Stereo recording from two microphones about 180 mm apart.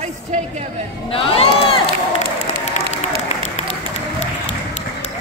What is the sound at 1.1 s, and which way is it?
Crowd, 30° left (ahead or behind).